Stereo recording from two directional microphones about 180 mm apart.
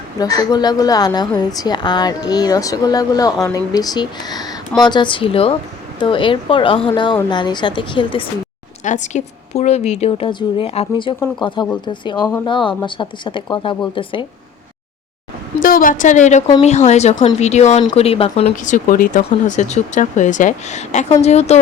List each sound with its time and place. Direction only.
0.2 s speech: 20° left (ahead or behind)
8.8 s speech: 40° left (ahead or behind)
15.6 s speech: 50° left (ahead or behind); by 18.5 s 30° left (ahead or behind)
18.5 s speech: 45° left (ahead or behind)